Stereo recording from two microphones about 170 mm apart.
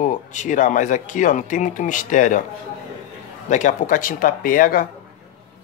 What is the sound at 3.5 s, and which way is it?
Speech, 50° left (ahead or behind).